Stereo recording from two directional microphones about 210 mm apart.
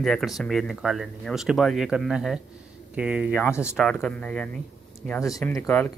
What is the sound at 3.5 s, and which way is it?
Speech, 10° left (ahead or behind).